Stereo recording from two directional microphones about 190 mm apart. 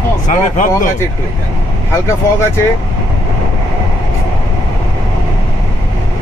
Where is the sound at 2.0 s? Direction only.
15° left (ahead or behind).